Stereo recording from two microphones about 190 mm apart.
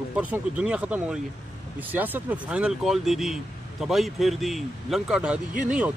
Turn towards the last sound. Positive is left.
turn(degrees=-5)  # may be behind; listen again after turning